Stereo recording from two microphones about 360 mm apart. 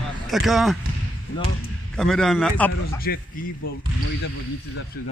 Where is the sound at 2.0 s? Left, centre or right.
Centre.